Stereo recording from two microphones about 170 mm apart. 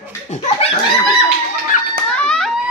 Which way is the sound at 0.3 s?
40° left (ahead or behind).